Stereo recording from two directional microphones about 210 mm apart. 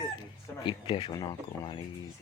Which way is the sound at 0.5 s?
25° left (ahead or behind).